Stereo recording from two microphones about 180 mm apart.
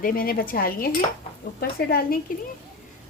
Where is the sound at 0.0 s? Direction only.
55° left (ahead or behind).